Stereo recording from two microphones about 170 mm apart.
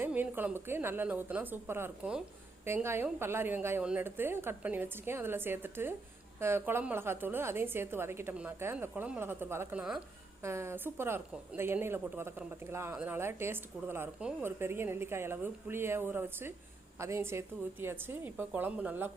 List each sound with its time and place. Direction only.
0.0 s a woman's voice: 10° right (ahead or behind)